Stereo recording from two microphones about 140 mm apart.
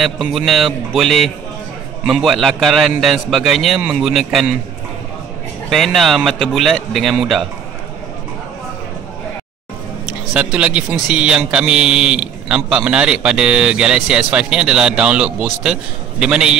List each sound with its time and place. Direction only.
0.0 s a man's voice: centre (ahead or behind)
5.7 s a man's voice: centre (ahead or behind)
10.3 s speech: 10° right (ahead or behind)